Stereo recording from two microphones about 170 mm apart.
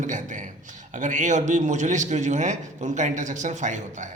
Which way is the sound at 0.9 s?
50° right (ahead or behind).